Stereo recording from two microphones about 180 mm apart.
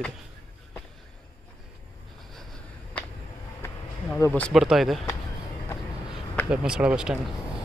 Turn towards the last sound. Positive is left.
turn(degrees=-5)  # may be behind; listen again after turning